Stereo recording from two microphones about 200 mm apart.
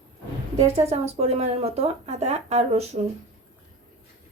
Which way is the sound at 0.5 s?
30° right (ahead or behind).